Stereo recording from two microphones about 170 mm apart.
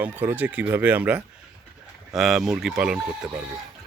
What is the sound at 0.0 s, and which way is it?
Speech, 10° right (ahead or behind).